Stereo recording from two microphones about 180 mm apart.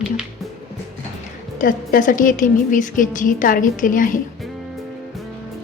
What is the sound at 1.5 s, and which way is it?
A woman's voice, 50° left (ahead or behind).